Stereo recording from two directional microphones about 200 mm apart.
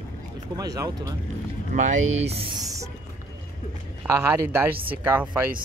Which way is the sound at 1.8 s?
35° right (ahead or behind).